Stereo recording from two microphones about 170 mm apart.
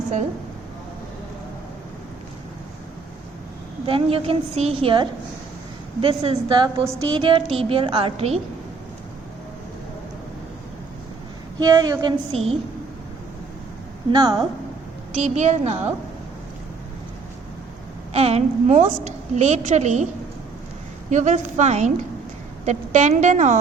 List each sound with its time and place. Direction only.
3.8 s a woman's voice: 35° right (ahead or behind)
11.6 s a woman's voice: 20° right (ahead or behind)
14.1 s a woman's voice: 20° right (ahead or behind)
15.1 s a woman's voice: 40° right (ahead or behind)
18.1 s a woman's voice: 40° right (ahead or behind)
21.1 s a woman's voice: 45° right (ahead or behind)